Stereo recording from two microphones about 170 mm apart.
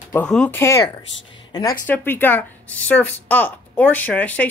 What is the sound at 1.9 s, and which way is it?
Speech, 10° left (ahead or behind).